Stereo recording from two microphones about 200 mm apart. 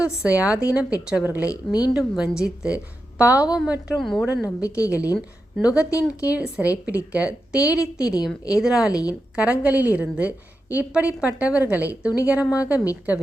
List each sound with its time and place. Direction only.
0.0 s a woman's voice: 5° right (ahead or behind)
1.5 s speech: 20° left (ahead or behind)
2.0 s a woman's voice: 5° right (ahead or behind)
4.6 s a woman's voice: 15° left (ahead or behind)
5.1 s a woman's voice: centre (ahead or behind)
8.0 s speech: 20° left (ahead or behind)
8.6 s a woman's voice: 5° right (ahead or behind)
8.9 s a woman's voice: 15° left (ahead or behind)
9.3 s a woman's voice: 5° right (ahead or behind)